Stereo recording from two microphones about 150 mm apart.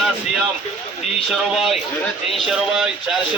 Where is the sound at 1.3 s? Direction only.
5° right (ahead or behind).